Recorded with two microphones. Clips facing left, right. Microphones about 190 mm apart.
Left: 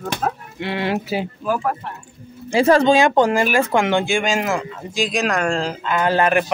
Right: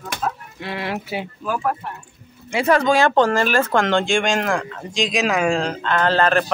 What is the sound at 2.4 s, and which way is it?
Speech, 30° left (ahead or behind).